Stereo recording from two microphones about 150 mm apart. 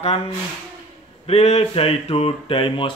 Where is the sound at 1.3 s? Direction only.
45° left (ahead or behind).